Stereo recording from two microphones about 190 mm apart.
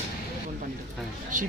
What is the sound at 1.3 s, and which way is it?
Speech, 45° right (ahead or behind).